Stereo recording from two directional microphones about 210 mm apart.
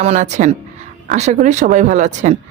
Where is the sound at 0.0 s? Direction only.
35° right (ahead or behind).